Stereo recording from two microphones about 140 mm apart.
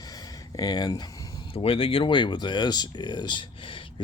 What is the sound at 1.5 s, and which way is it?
Speech, 40° left (ahead or behind).